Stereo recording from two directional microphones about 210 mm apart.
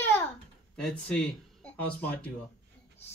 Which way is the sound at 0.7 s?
5° left (ahead or behind).